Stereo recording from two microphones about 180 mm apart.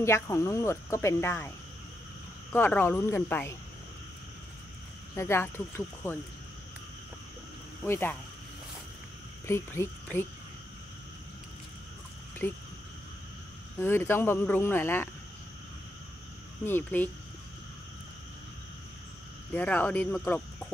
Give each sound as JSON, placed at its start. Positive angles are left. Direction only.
{"t": 0.0, "sound": "speech", "side_deg": 15}
{"t": 2.5, "sound": "speech", "side_deg": 10}
{"t": 5.1, "sound": "speech", "side_deg": 15}
{"t": 7.8, "sound": "speech", "side_deg": 10}
{"t": 9.5, "sound": "speech", "side_deg": 15}
{"t": 12.4, "sound": "speech", "side_deg": 10}
{"t": 13.7, "sound": "speech", "side_deg": 15}
{"t": 16.6, "sound": "speech", "side_deg": 10}
{"t": 19.5, "sound": "speech", "side_deg": 10}